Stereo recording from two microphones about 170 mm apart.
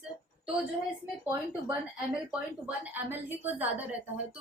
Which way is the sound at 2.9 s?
10° right (ahead or behind).